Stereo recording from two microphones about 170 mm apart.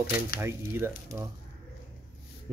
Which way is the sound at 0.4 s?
15° right (ahead or behind).